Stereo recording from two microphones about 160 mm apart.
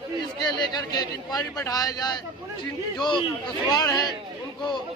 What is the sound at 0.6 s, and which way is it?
A man's voice, 25° left (ahead or behind).